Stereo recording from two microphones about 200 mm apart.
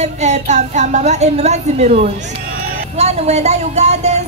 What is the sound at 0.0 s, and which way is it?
Speech, 35° right (ahead or behind).